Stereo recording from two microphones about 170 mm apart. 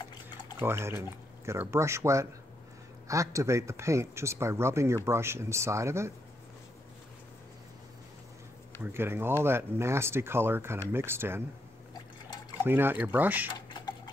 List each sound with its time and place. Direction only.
0.6 s speech: 15° right (ahead or behind)
8.8 s speech: 15° right (ahead or behind)
12.6 s speech: 10° right (ahead or behind)
13.5 s typing: 25° left (ahead or behind)